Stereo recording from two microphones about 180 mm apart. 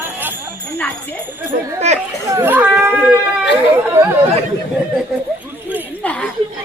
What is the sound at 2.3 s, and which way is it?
Baby cry, 15° right (ahead or behind).